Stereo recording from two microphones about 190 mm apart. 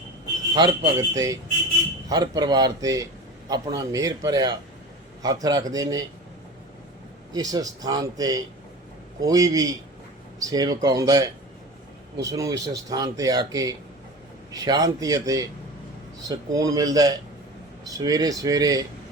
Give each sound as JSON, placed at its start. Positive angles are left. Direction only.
{"t": 0.5, "sound": "speech", "side_deg": -25}
{"t": 7.3, "sound": "speech", "side_deg": -20}